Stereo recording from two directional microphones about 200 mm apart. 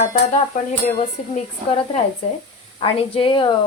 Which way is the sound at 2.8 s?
25° left (ahead or behind).